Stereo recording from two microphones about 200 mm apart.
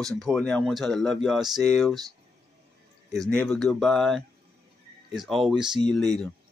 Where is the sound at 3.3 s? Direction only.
5° left (ahead or behind).